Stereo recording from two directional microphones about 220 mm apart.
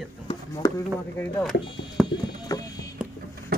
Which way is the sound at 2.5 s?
15° left (ahead or behind).